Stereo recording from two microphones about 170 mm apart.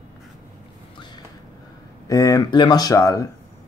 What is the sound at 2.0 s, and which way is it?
Speech, 20° left (ahead or behind).